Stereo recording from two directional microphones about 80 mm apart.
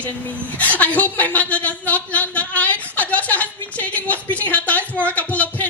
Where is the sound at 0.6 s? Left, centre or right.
Centre.